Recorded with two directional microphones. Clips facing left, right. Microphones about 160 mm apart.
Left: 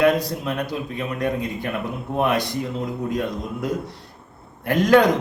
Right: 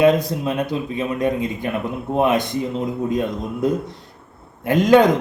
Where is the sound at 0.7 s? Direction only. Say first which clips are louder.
Right 4 dB; 20° right (ahead or behind).